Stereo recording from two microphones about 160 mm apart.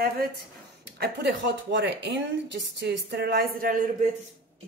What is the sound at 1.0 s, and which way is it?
Speech, 90° right.